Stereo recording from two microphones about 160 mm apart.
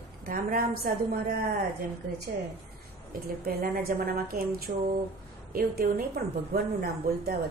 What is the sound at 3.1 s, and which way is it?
Speech, 70° right (ahead or behind).